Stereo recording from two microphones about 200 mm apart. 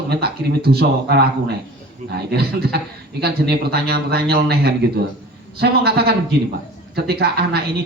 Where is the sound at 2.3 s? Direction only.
55° right (ahead or behind).